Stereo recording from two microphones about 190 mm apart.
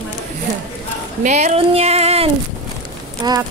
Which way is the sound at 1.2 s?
35° right (ahead or behind).